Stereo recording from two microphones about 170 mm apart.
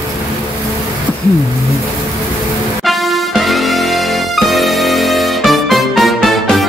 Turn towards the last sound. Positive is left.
turn(degrees=0)  # may be behind; listen again after turning